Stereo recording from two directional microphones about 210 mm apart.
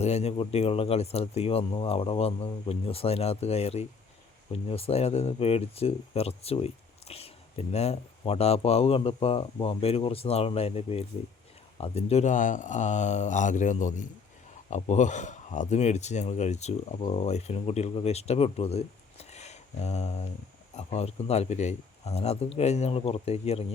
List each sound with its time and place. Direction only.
0.0 s speech: 30° left (ahead or behind)